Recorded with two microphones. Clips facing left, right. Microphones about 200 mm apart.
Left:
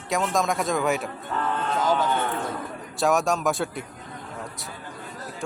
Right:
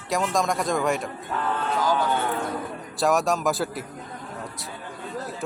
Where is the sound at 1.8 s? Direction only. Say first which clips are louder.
Left 1 dB; 25° left (ahead or behind).